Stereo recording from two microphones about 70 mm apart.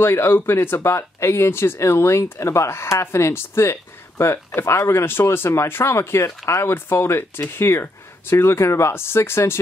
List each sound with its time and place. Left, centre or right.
0.0 s speech: left